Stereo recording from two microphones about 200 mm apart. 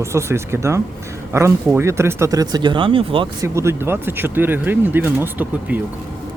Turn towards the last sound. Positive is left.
turn(degrees=-10)  # may be behind; listen again after turning